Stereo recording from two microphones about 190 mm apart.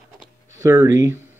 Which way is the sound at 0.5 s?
15° right (ahead or behind).